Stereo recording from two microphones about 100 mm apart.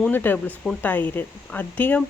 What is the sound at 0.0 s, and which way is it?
Speech, 20° left (ahead or behind).